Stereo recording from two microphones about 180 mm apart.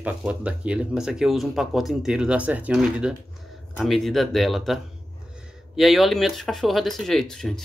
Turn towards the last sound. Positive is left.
turn(degrees=0)  # may be behind; listen again after turning